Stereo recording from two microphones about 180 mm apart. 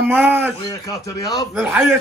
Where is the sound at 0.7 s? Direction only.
20° left (ahead or behind).